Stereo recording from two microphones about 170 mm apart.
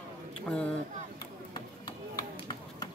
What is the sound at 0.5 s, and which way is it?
Speech, 5° left (ahead or behind).